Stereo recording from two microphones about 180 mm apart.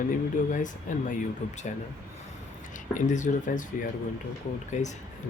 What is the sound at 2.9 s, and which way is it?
Speech, 45° left (ahead or behind).